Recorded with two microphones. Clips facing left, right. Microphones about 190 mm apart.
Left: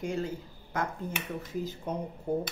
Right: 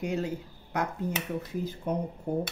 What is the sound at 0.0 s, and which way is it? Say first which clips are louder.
Speech: right 2 dB; 65° right (ahead or behind).